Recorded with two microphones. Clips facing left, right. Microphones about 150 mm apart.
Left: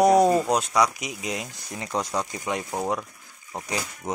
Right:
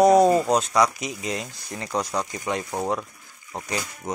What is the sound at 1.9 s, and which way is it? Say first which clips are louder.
Speech: right 1 dB; centre (ahead or behind).